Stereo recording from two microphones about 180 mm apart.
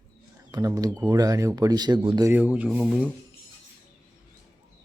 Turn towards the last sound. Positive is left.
turn(degrees=-5)  # may be behind; listen again after turning